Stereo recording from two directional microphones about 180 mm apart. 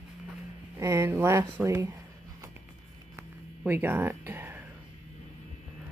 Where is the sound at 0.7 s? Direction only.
15° right (ahead or behind).